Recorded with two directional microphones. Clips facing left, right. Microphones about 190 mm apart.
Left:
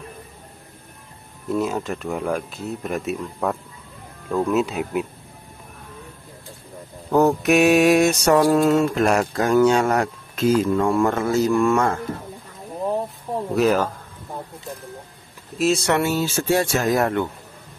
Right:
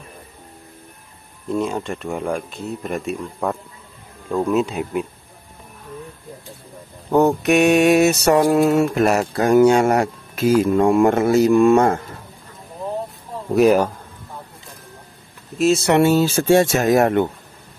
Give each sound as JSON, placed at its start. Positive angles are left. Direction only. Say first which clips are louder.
{"t": 1.5, "sound": "speech", "louder": "right 1 dB", "side_deg": 5}
{"t": 7.1, "sound": "mantra", "louder": "right 1 dB", "side_deg": 0}
{"t": 10.7, "sound": "speech", "louder": "right 4 dB", "side_deg": -20}
{"t": 13.6, "sound": "mantra", "louder": "right 5 dB", "side_deg": -15}
{"t": 15.5, "sound": "speech", "louder": "right 3 dB", "side_deg": 0}
{"t": 16.0, "sound": "speech", "louder": "right 7 dB", "side_deg": -30}